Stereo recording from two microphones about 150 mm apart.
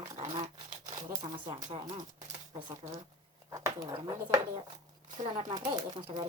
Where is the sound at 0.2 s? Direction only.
50° right (ahead or behind).